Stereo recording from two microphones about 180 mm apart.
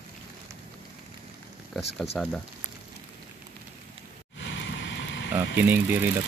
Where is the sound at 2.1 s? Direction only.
5° left (ahead or behind).